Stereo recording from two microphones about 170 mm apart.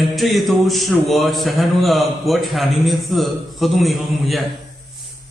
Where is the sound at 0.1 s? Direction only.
Centre (ahead or behind).